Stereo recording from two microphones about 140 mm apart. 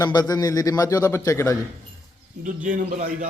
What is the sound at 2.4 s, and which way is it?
Speech, 65° right (ahead or behind).